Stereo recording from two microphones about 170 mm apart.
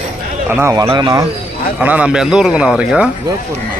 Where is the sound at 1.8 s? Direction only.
10° right (ahead or behind).